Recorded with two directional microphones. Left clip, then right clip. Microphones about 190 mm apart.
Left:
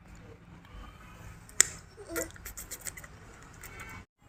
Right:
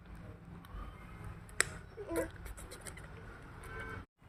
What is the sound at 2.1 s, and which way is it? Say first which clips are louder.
Dog: left 2 dB; 10° right (ahead or behind).